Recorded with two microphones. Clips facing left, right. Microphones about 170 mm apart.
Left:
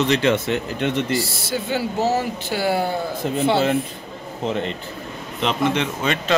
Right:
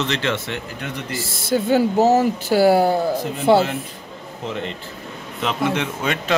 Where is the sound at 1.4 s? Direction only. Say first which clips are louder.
Right 6 dB; 50° right (ahead or behind).